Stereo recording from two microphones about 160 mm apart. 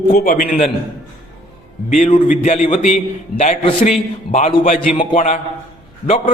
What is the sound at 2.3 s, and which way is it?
A man's voice, 45° left (ahead or behind).